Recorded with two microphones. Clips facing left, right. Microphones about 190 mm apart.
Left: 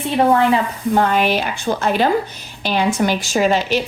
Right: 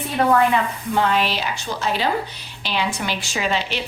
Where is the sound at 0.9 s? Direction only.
50° left (ahead or behind).